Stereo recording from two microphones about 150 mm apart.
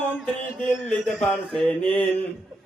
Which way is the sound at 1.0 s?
Centre (ahead or behind).